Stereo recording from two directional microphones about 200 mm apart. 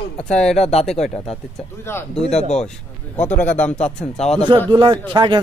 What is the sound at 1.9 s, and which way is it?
Speech, 10° left (ahead or behind).